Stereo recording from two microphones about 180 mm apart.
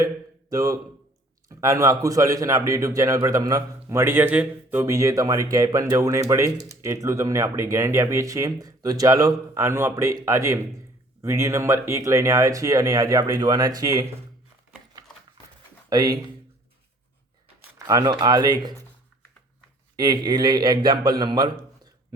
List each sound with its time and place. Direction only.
0.5 s a man's voice: 20° right (ahead or behind)
15.9 s a man's voice: 20° right (ahead or behind)
17.7 s a man's voice: 20° right (ahead or behind)
20.0 s a man's voice: 20° right (ahead or behind)